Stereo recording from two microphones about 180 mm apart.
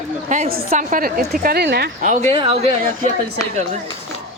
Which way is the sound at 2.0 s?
40° right (ahead or behind).